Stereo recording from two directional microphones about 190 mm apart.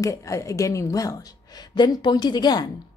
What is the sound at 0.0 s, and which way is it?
A woman's voice, 15° left (ahead or behind).